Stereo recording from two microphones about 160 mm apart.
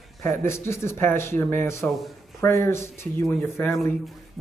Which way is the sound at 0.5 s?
15° left (ahead or behind).